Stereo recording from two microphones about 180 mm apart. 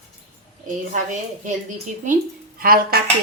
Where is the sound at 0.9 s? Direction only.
45° right (ahead or behind).